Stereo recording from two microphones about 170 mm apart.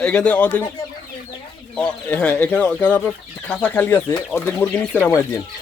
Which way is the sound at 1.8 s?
5° left (ahead or behind).